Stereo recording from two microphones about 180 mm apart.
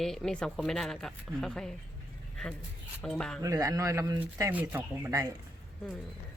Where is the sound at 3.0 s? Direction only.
5° left (ahead or behind).